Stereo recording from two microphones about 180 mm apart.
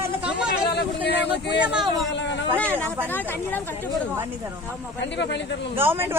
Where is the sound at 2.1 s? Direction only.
80° left.